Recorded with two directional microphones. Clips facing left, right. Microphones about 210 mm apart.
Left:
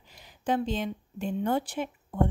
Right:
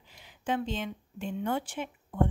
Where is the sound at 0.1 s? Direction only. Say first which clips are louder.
Left 3 dB; 40° left (ahead or behind).